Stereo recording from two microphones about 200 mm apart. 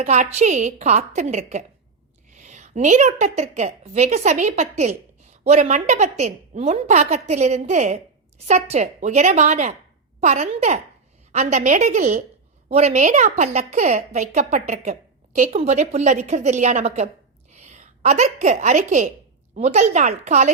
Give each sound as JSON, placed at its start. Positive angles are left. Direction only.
{"t": 0.0, "sound": "a woman's voice", "side_deg": -35}